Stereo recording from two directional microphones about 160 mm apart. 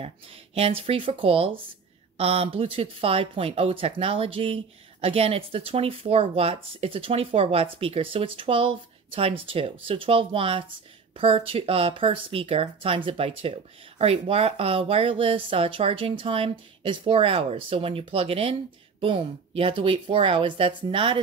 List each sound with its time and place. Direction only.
0.0 s speech: 35° right (ahead or behind)